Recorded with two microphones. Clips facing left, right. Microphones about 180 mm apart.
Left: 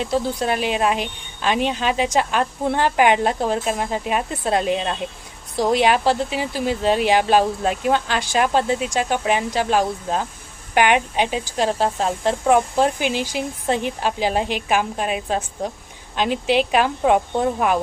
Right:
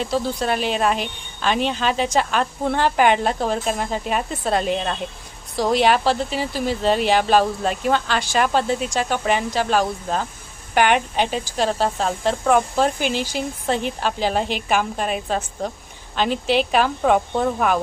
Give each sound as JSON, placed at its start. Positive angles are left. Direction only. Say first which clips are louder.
{"t": 0.1, "sound": "a woman's voice", "louder": "left 2 dB", "side_deg": 15}
{"t": 5.5, "sound": "a woman's voice", "louder": "even", "side_deg": 15}